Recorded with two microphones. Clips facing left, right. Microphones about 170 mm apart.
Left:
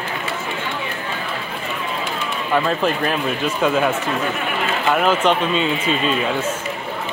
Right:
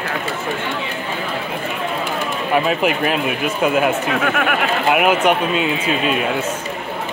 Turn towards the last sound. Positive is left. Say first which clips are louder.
# right 1 dB
turn(degrees=-5)  # may be behind; listen again after turning